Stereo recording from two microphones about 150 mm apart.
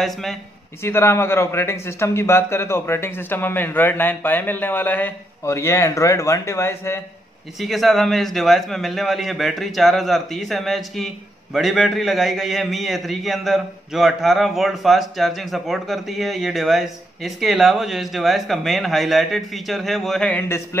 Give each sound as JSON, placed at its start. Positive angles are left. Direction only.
{"t": 0.0, "sound": "a man's voice", "side_deg": 0}
{"t": 0.8, "sound": "a man's voice", "side_deg": 15}
{"t": 7.5, "sound": "a man's voice", "side_deg": 0}